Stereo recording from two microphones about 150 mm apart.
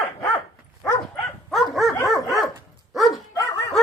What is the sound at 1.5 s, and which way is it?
Dog, centre (ahead or behind).